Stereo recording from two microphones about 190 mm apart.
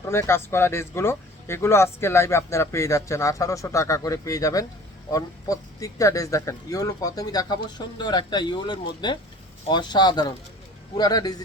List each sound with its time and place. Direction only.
0.1 s speech: 15° left (ahead or behind)